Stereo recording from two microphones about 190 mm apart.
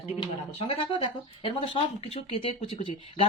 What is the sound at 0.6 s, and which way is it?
Speech, 30° left (ahead or behind).